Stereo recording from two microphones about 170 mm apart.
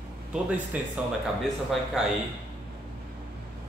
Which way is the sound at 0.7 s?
10° right (ahead or behind).